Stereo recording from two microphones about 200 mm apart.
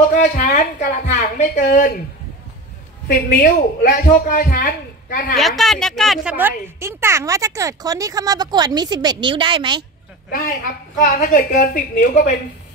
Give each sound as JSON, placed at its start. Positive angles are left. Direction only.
{"t": 0.1, "sound": "a woman's voice", "side_deg": 40}
{"t": 3.1, "sound": "speech", "side_deg": 45}
{"t": 5.3, "sound": "a woman's voice", "side_deg": 0}
{"t": 11.0, "sound": "speech", "side_deg": 40}